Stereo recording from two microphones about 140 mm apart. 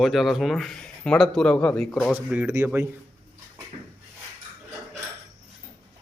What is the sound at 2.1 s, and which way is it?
Speech, 15° right (ahead or behind).